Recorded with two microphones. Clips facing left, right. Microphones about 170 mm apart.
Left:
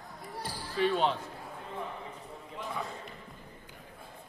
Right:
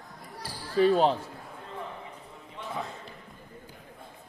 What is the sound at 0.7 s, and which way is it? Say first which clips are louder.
Speech: right 6 dB; 40° right (ahead or behind).